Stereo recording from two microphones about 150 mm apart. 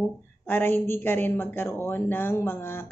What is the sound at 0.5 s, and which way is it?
Speech, 15° left (ahead or behind).